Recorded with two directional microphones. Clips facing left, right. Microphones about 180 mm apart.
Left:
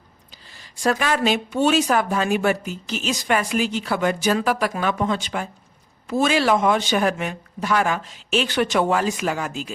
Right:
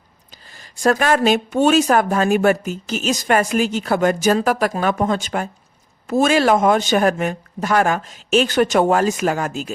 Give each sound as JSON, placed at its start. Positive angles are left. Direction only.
{"t": 0.5, "sound": "speech", "side_deg": -45}